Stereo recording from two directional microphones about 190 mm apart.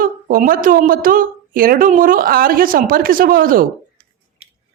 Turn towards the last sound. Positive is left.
turn(degrees=-50)  # may be behind; listen again after turning